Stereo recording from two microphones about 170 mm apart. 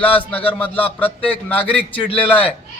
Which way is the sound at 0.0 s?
10° left (ahead or behind).